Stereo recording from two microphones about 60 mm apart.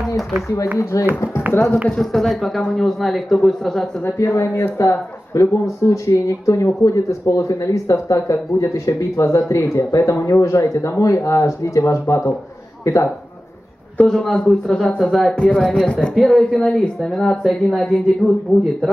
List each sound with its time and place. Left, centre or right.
0.9 s speech: left
2.0 s speech: centre
4.2 s speech: left
9.6 s speech: left
9.8 s speech: left
13.9 s a woman's voice: centre
16.2 s speech: centre
16.5 s a woman's voice: centre